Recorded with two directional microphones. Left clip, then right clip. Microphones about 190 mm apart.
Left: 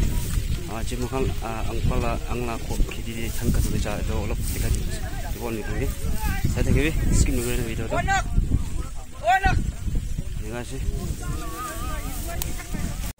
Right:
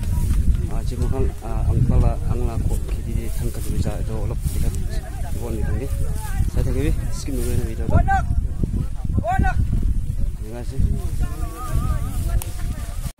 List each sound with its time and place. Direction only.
1.1 s speech: 5° left (ahead or behind)
3.8 s speech: centre (ahead or behind)
6.5 s speech: centre (ahead or behind)
7.9 s speech: 50° right (ahead or behind)
9.2 s a sound: 40° right (ahead or behind)